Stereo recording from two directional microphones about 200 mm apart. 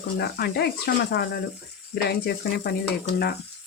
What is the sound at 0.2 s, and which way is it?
Speech, 50° left (ahead or behind).